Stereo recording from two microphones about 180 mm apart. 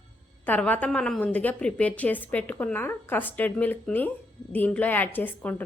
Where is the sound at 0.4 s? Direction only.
10° left (ahead or behind).